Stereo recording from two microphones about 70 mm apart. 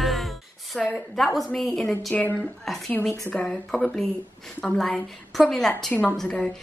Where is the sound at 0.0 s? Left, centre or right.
Centre.